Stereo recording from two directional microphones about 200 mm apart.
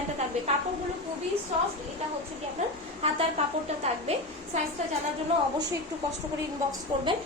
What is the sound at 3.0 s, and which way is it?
A woman's voice, 30° right (ahead or behind).